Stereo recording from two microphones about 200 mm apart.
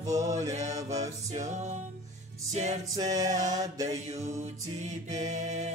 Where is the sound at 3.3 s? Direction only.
40° right (ahead or behind).